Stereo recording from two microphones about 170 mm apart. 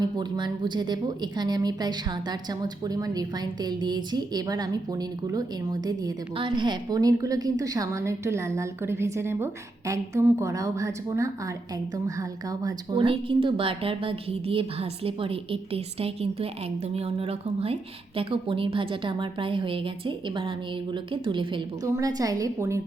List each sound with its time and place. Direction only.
0.0 s a woman's voice: 25° right (ahead or behind)
21.8 s a woman's voice: 20° right (ahead or behind)